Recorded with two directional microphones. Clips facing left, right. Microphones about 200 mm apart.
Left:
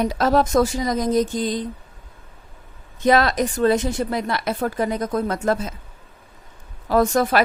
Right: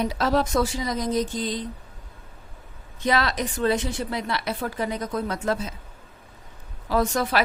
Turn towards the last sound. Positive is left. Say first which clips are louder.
# left 5 dB
turn(degrees=50)  # may be behind; listen again after turning